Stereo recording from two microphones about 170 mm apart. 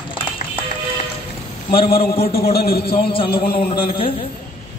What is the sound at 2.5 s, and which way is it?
Speech, 65° left (ahead or behind).